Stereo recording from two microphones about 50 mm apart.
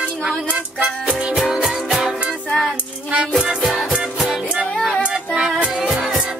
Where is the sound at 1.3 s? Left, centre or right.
Centre.